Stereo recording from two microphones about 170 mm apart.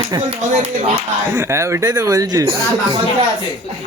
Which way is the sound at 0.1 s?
30° right (ahead or behind).